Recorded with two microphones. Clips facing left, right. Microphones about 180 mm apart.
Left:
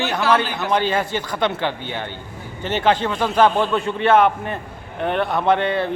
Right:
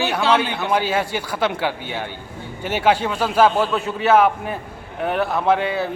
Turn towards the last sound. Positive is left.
turn(degrees=-5)  # may be behind; listen again after turning